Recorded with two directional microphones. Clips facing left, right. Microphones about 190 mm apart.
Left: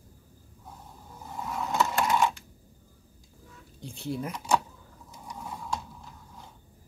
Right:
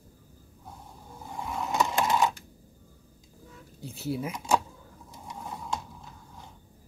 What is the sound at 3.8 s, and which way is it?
Speech, 5° right (ahead or behind).